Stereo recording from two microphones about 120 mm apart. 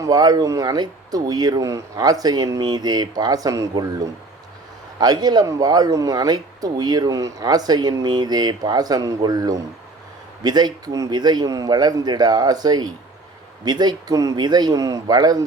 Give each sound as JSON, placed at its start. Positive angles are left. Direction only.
{"t": 0.0, "sound": "speech", "side_deg": -35}